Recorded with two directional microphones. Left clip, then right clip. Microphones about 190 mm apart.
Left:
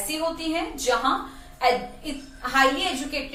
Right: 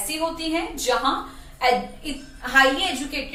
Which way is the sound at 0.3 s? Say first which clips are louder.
Right 2 dB; 10° right (ahead or behind).